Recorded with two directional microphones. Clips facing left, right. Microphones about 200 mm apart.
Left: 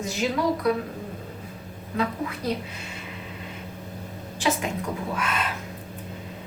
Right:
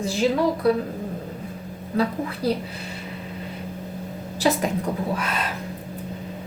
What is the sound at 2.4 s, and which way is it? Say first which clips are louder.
Speech: right 5 dB; 35° right (ahead or behind).